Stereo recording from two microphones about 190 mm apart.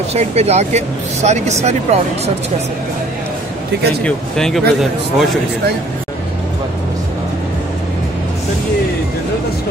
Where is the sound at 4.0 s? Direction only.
5° left (ahead or behind).